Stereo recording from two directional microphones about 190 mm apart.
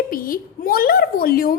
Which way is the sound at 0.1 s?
50° left (ahead or behind).